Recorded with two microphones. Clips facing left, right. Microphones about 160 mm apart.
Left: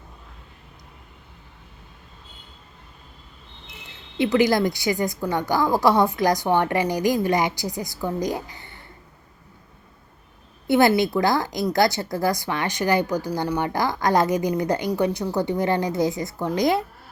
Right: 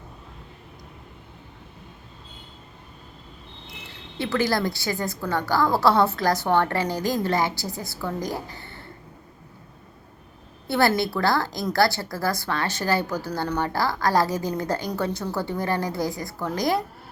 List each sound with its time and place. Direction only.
4.2 s a woman's voice: 20° left (ahead or behind)
10.7 s a woman's voice: 20° left (ahead or behind)